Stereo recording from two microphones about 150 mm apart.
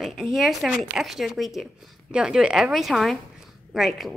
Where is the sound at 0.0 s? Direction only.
Centre (ahead or behind).